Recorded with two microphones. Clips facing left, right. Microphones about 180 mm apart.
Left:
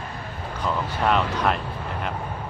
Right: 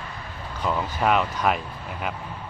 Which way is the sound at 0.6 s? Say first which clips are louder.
Even; 5° right (ahead or behind).